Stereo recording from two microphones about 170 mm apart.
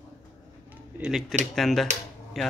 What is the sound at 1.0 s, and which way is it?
A man's voice, centre (ahead or behind).